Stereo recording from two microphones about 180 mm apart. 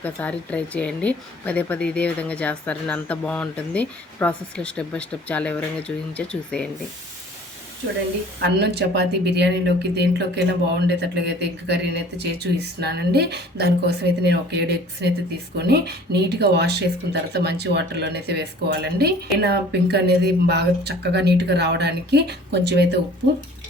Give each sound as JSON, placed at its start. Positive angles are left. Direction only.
{"t": 0.0, "sound": "a woman's voice", "side_deg": 10}
{"t": 8.4, "sound": "speech", "side_deg": -65}